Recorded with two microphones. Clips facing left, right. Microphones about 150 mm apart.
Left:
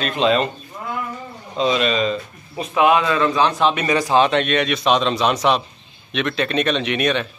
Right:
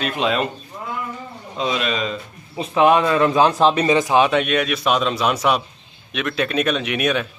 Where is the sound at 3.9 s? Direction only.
15° right (ahead or behind).